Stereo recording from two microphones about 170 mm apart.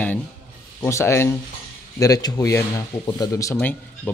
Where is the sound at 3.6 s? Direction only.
10° left (ahead or behind).